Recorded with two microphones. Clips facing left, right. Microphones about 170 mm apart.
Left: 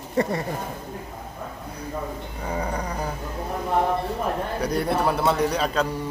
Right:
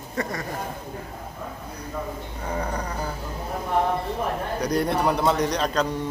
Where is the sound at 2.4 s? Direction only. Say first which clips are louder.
Left 1 dB; 10° left (ahead or behind).